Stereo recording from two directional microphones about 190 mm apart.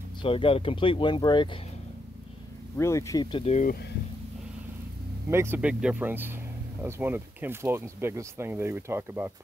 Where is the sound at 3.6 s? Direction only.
55° left (ahead or behind).